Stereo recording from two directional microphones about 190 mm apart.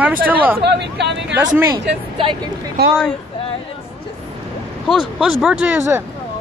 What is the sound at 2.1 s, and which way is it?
Speech, 25° right (ahead or behind).